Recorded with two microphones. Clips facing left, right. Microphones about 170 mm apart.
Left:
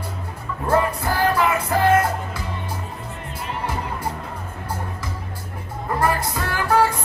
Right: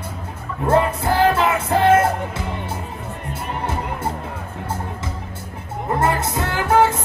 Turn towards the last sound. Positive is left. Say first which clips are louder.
# right 3 dB
turn(degrees=-25)  # may be behind; listen again after turning